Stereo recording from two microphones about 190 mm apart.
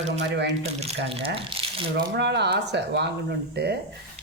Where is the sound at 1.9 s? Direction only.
65° right (ahead or behind).